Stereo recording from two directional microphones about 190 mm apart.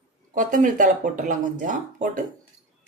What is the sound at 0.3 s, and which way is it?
Speech, 45° right (ahead or behind).